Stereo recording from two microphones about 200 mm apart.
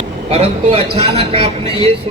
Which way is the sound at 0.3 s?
30° right (ahead or behind).